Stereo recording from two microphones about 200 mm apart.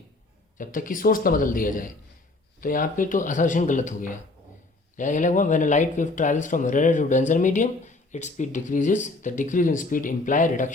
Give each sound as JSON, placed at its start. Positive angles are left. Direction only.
{"t": 0.6, "sound": "speech", "side_deg": 40}